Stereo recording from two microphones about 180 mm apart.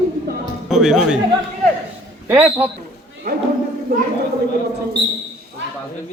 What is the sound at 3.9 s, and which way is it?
Speech, 50° right (ahead or behind).